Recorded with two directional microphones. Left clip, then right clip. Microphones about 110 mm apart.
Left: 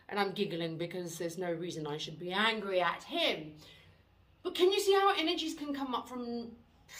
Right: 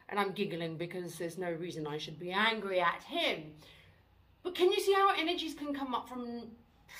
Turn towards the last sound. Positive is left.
turn(degrees=35)  # may be behind; listen again after turning